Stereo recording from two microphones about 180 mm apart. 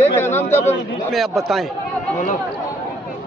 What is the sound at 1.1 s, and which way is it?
Speech, centre (ahead or behind).